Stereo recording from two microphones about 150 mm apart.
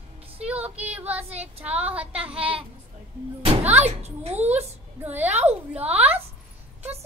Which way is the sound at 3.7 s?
45° right (ahead or behind).